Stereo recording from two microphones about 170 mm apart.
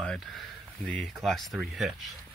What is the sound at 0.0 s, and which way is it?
Speech, 5° left (ahead or behind).